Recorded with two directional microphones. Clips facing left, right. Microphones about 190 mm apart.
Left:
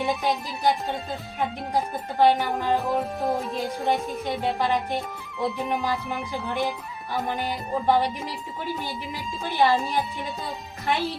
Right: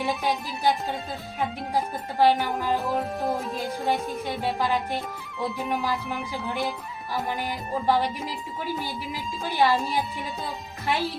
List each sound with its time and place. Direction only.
0.0 s speech: centre (ahead or behind)
9.4 s speech: centre (ahead or behind)